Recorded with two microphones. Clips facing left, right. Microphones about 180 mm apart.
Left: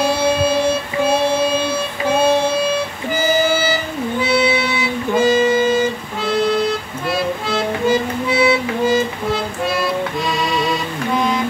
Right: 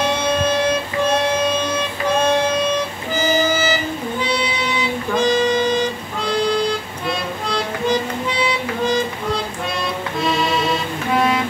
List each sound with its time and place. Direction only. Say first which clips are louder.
0.0 s music: left 3 dB; 10° left (ahead or behind)
5.1 s music: left 3 dB; 5° left (ahead or behind)
10.2 s accordion: right 5 dB; centre (ahead or behind)